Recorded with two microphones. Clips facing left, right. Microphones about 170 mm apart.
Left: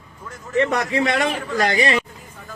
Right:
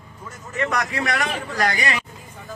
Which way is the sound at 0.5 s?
30° left (ahead or behind).